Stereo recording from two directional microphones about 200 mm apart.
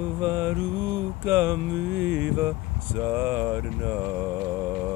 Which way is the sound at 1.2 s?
15° right (ahead or behind).